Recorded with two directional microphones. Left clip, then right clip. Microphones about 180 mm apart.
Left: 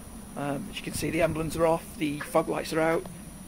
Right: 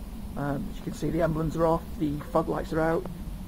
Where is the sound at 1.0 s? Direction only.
35° left (ahead or behind).